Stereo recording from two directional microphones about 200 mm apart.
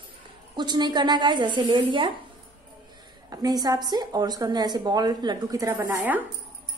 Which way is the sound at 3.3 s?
20° right (ahead or behind).